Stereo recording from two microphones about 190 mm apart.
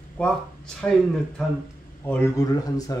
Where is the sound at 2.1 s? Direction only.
15° left (ahead or behind).